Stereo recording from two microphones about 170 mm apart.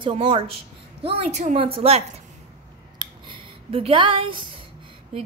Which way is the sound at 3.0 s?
30° right (ahead or behind).